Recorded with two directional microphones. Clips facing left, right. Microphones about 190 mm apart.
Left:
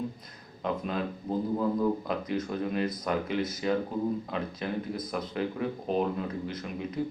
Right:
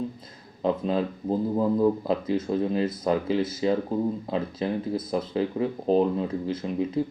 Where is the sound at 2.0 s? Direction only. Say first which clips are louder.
Right 6 dB; 30° right (ahead or behind).